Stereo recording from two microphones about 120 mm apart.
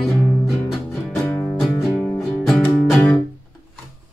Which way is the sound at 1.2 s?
15° left (ahead or behind).